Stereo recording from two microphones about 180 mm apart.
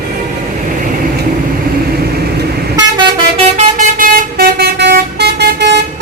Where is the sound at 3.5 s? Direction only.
50° right (ahead or behind).